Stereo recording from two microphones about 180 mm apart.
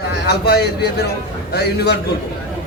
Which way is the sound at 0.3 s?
65° left (ahead or behind).